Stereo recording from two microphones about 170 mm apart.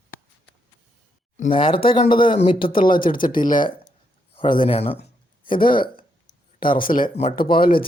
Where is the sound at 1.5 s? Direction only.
30° left (ahead or behind).